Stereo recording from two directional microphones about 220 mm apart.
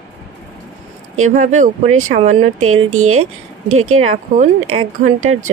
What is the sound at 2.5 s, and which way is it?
Speech, 75° right (ahead or behind).